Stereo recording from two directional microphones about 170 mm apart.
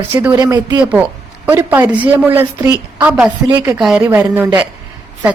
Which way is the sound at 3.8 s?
5° right (ahead or behind).